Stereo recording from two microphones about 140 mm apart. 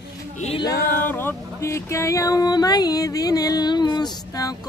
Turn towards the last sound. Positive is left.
turn(degrees=25)  # may be behind; listen again after turning